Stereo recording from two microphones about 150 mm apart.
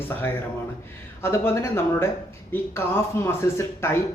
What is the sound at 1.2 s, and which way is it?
Speech, 15° left (ahead or behind).